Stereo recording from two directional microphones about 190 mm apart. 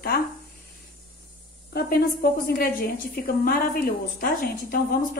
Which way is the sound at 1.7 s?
55° left (ahead or behind).